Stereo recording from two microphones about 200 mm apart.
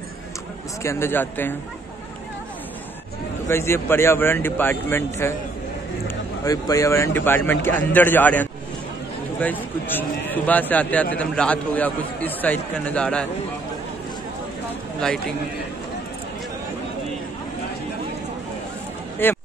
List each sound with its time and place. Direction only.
0.8 s a man's voice: 10° left (ahead or behind)
3.4 s a man's voice: 10° left (ahead or behind)
15.0 s a man's voice: 5° left (ahead or behind)
19.2 s speech: 10° left (ahead or behind)